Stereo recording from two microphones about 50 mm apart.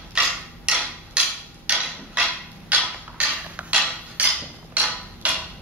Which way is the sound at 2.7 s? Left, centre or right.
Right.